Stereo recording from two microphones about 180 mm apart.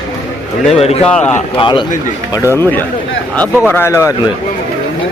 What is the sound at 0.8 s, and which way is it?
Speech, 35° left (ahead or behind).